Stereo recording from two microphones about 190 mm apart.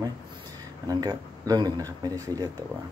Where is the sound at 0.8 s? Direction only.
20° right (ahead or behind).